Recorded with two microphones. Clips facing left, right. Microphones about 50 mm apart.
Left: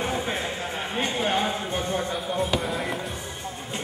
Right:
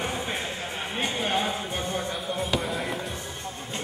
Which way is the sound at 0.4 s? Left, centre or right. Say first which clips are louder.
Left 3 dB; centre.